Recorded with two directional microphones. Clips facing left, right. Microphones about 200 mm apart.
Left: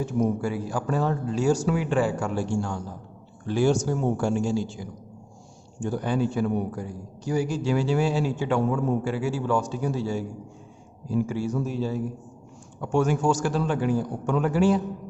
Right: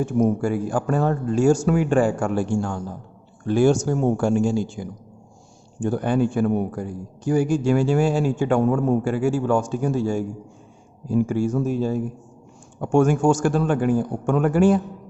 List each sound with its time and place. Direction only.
0.0 s a man's voice: 50° right (ahead or behind)